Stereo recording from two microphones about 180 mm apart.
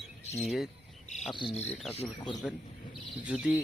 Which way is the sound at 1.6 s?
10° left (ahead or behind).